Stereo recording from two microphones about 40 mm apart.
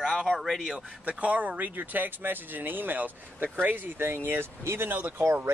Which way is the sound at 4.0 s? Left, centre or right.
Right.